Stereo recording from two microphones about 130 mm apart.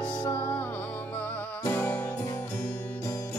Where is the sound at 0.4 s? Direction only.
15° left (ahead or behind).